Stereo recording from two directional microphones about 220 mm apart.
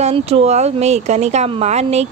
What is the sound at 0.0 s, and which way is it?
Speech, 25° right (ahead or behind).